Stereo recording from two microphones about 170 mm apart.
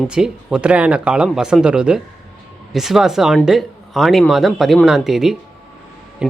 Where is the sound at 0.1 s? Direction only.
5° right (ahead or behind).